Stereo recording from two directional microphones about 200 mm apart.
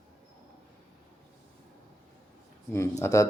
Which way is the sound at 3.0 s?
15° left (ahead or behind).